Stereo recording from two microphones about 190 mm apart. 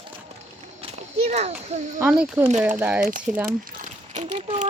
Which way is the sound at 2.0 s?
5° right (ahead or behind).